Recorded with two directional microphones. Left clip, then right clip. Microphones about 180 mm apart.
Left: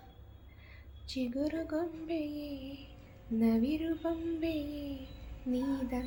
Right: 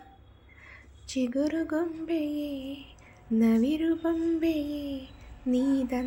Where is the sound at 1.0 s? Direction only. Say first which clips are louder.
Right 7 dB; 45° right (ahead or behind).